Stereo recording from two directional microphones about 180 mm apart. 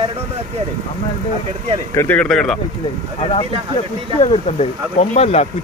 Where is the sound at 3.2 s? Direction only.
30° left (ahead or behind).